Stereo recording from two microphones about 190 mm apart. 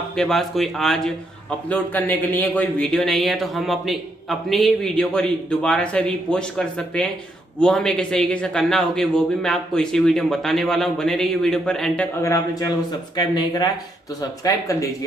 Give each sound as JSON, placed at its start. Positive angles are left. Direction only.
{"t": 0.1, "sound": "a man's voice", "side_deg": 0}